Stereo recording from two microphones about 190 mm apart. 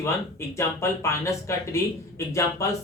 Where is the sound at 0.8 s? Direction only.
15° left (ahead or behind).